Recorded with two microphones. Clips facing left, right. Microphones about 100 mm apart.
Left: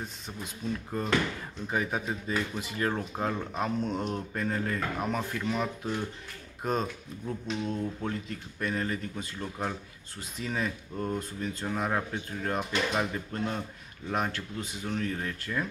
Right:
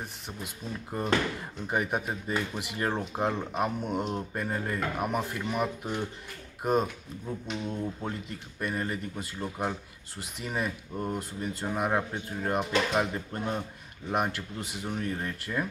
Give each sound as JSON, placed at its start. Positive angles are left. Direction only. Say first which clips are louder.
{"t": 1.7, "sound": "speech", "louder": "right 1 dB", "side_deg": -10}